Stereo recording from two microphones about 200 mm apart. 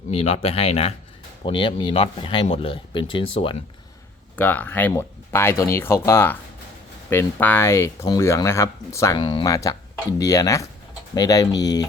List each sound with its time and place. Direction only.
0.1 s speech: 30° left (ahead or behind)
4.4 s speech: 10° left (ahead or behind)